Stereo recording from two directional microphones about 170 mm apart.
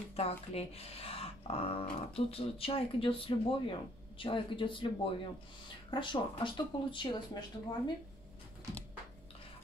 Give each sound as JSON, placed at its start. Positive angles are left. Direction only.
{"t": 0.1, "sound": "speech", "side_deg": 35}